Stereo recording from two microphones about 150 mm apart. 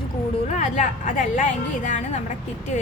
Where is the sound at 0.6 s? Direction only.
55° left (ahead or behind).